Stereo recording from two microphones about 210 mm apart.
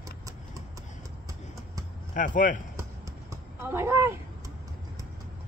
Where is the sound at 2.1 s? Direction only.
35° left (ahead or behind).